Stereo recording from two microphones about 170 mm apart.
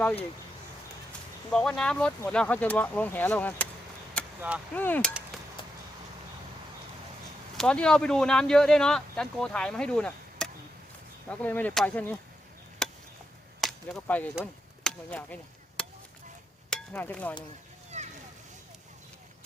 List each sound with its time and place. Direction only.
1.5 s speech: 5° left (ahead or behind)
4.4 s speech: 10° right (ahead or behind)
4.7 s speech: 10° left (ahead or behind)
7.5 s speech: 5° left (ahead or behind)
12.8 s chop: 5° left (ahead or behind)
13.6 s whip: centre (ahead or behind)
14.8 s speech: 10° left (ahead or behind)
16.6 s speech: 5° left (ahead or behind)
17.9 s a sound: 45° right (ahead or behind)